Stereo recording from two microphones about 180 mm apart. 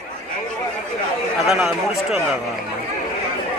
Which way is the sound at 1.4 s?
Centre (ahead or behind).